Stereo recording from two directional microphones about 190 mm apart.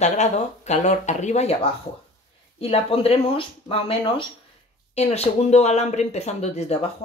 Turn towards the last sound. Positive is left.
turn(degrees=35)  # may be behind; listen again after turning